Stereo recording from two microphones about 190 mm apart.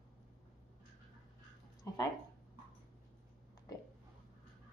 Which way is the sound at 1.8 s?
20° left (ahead or behind).